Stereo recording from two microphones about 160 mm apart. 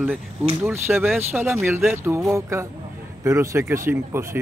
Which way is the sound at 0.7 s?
15° right (ahead or behind).